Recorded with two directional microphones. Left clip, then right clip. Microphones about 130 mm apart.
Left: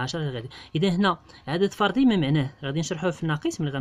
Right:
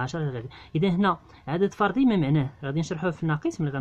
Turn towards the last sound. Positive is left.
turn(degrees=20)  # may be behind; listen again after turning